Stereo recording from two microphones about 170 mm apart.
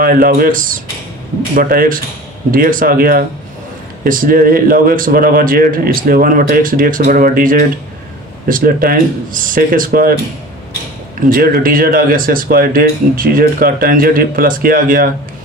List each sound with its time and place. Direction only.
0.0 s speech: 60° right (ahead or behind)
11.3 s speech: 55° right (ahead or behind)